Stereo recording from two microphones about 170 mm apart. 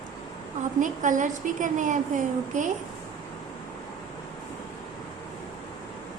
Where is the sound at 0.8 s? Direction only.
50° right (ahead or behind).